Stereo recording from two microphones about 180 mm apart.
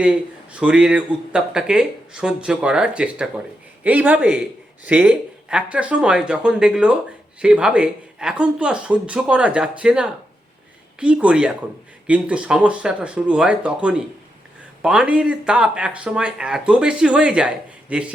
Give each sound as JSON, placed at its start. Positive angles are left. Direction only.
{"t": 0.6, "sound": "speech", "side_deg": -5}